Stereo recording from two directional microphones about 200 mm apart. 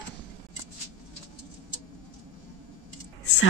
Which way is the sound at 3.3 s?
65° left (ahead or behind).